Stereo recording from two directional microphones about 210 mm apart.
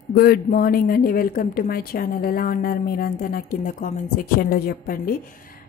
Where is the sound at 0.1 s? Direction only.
45° left (ahead or behind).